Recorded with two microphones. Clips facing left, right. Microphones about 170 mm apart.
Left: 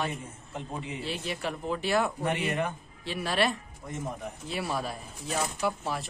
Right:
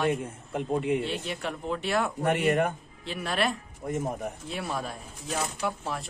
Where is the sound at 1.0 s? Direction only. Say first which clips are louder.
Right 1 dB; centre (ahead or behind).